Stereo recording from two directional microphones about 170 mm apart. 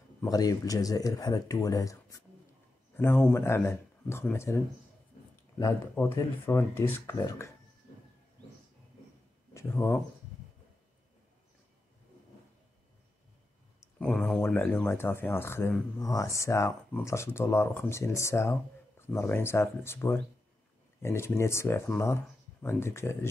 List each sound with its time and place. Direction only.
0.2 s speech: 20° left (ahead or behind)
9.5 s speech: 15° left (ahead or behind)
13.9 s speech: 5° left (ahead or behind)